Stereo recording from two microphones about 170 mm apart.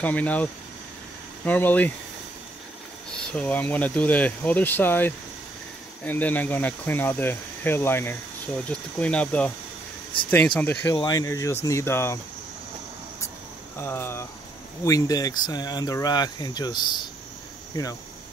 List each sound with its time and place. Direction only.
0.0 s speech: 10° left (ahead or behind)
3.1 s speech: 5° left (ahead or behind)
13.7 s speech: 15° left (ahead or behind)